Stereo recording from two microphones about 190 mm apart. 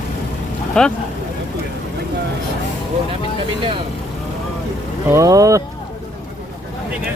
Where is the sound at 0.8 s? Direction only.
5° left (ahead or behind).